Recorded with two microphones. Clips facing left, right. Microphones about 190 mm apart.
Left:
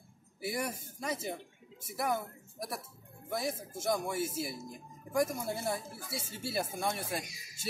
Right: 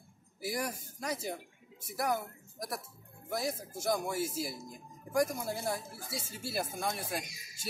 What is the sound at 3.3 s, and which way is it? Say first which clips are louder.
Speech: even; centre (ahead or behind).